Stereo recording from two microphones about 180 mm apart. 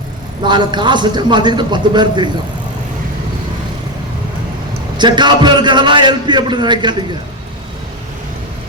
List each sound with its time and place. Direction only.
0.4 s a man's voice: 25° right (ahead or behind)
4.9 s a man's voice: 25° right (ahead or behind)